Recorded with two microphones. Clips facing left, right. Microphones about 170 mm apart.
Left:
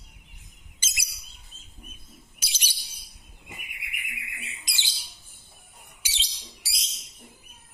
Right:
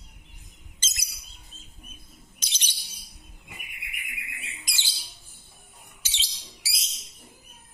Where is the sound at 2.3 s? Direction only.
10° left (ahead or behind).